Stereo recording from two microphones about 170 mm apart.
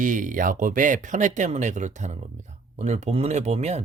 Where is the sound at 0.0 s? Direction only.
50° right (ahead or behind).